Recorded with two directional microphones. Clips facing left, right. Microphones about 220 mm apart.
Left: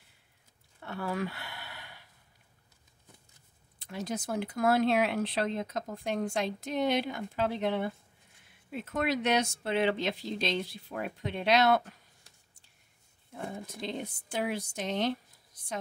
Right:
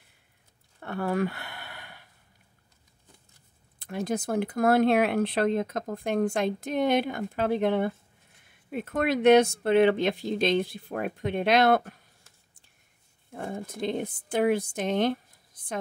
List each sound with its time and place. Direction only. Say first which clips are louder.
0.7 s a sound: right 6 dB; 50° right (ahead or behind)
3.8 s speech: right 6 dB; 55° right (ahead or behind)
13.3 s speech: right 5 dB; 50° right (ahead or behind)